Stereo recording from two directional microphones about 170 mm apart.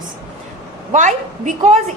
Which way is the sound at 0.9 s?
45° right (ahead or behind).